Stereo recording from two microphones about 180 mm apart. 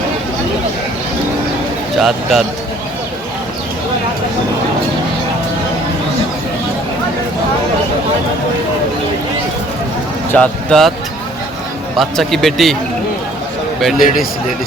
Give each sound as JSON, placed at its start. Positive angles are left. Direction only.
{"t": 2.0, "sound": "speech", "side_deg": 0}
{"t": 10.3, "sound": "speech", "side_deg": 5}
{"t": 11.9, "sound": "speech", "side_deg": 0}
{"t": 14.0, "sound": "speech", "side_deg": 50}